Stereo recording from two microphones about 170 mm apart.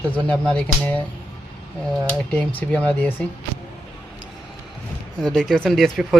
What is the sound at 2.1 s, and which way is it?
Speech, 10° left (ahead or behind).